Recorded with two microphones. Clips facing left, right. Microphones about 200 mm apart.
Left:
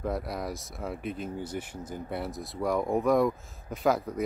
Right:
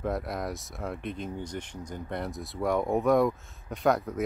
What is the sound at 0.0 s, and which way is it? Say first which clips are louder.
Speech: right 1 dB; centre (ahead or behind).